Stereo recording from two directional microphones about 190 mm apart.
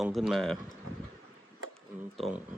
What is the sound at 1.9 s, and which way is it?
Speech, 5° right (ahead or behind).